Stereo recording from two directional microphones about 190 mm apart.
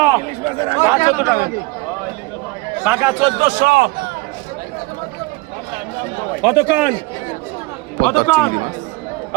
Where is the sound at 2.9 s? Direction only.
10° right (ahead or behind).